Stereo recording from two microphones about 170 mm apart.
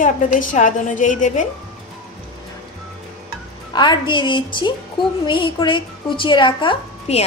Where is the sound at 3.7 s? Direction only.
25° left (ahead or behind).